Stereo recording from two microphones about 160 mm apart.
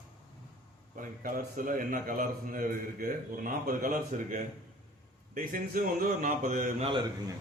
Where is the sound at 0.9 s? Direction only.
60° right (ahead or behind).